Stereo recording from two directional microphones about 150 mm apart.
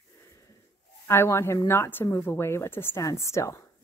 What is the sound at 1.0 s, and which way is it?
Speech, 15° left (ahead or behind).